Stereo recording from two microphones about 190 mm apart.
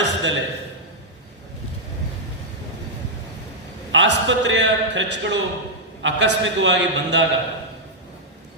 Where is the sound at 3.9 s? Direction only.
70° right (ahead or behind).